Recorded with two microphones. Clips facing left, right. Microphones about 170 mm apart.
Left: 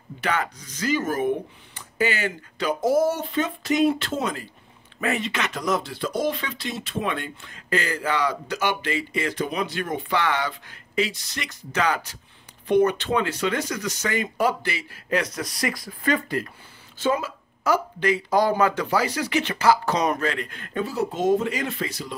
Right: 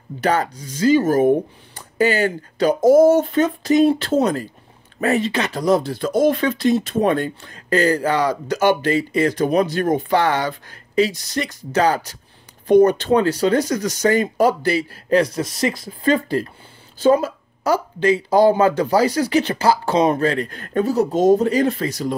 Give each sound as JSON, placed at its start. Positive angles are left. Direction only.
{"t": 0.2, "sound": "speech", "side_deg": -40}